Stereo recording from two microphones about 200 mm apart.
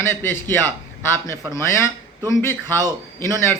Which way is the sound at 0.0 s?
10° left (ahead or behind).